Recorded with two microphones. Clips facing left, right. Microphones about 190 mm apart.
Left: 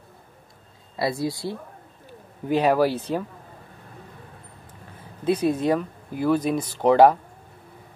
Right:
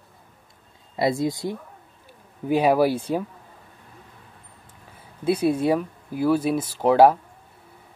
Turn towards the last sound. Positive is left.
turn(degrees=-5)  # may be behind; listen again after turning